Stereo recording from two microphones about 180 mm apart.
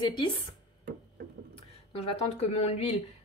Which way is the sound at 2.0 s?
35° left (ahead or behind).